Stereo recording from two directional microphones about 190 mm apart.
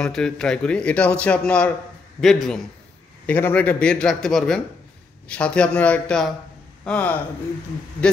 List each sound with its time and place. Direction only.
0.0 s a man's voice: 5° left (ahead or behind)